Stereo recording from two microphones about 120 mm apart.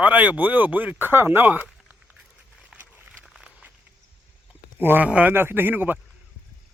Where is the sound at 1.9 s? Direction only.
10° right (ahead or behind).